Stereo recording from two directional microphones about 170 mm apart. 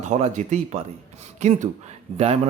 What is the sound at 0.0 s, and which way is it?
Speech, 45° right (ahead or behind).